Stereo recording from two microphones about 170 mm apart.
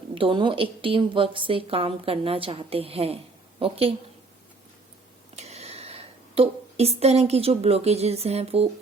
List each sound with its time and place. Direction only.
0.1 s a woman's voice: 30° right (ahead or behind)
5.4 s speech: 40° right (ahead or behind)